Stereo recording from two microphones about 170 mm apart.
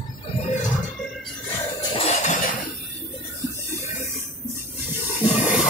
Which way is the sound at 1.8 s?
35° left (ahead or behind).